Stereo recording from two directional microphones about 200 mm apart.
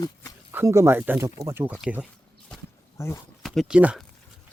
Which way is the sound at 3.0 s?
15° left (ahead or behind).